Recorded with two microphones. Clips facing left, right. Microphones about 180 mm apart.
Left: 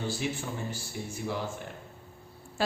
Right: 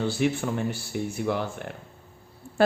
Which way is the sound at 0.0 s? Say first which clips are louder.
Right 8 dB; 65° right (ahead or behind).